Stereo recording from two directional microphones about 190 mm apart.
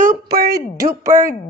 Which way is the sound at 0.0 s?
50° right (ahead or behind).